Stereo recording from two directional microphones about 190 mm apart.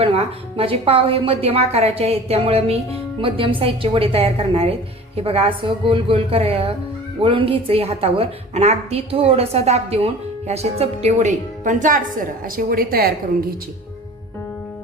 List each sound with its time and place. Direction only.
0.0 s a woman's voice: 30° right (ahead or behind); by 13.1 s 50° right (ahead or behind)